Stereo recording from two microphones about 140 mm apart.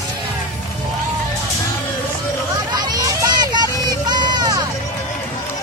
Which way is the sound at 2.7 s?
30° right (ahead or behind).